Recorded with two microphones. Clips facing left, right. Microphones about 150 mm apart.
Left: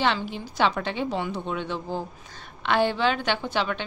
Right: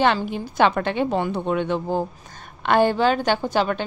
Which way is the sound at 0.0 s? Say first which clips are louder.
Right 5 dB; 50° right (ahead or behind).